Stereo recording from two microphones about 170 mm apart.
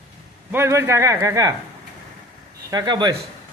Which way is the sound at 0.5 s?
15° right (ahead or behind).